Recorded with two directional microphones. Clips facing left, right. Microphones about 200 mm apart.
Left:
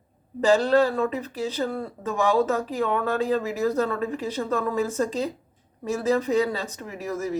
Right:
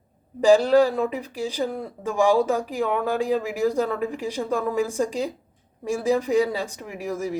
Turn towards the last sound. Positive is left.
turn(degrees=-10)  # may be behind; listen again after turning